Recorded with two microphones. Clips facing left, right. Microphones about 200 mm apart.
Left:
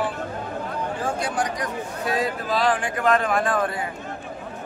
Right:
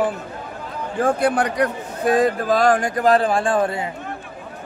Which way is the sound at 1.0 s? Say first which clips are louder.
Right 10 dB; 55° right (ahead or behind).